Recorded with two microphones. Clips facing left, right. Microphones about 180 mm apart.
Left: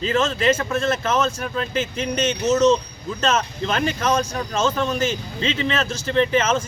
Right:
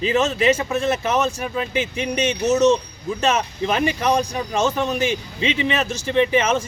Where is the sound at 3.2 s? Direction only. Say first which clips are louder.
Right 1 dB; 15° right (ahead or behind).